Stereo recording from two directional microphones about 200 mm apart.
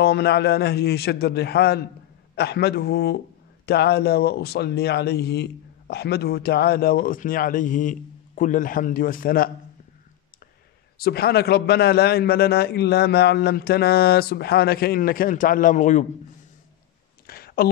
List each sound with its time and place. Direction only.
0.0 s speech: 55° left (ahead or behind)
11.0 s speech: 50° left (ahead or behind)
17.3 s a sound: 50° left (ahead or behind)